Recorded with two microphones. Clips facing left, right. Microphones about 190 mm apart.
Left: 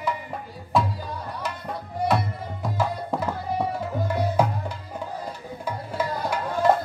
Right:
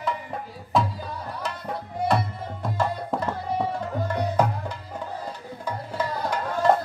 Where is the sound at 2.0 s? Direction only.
Centre (ahead or behind).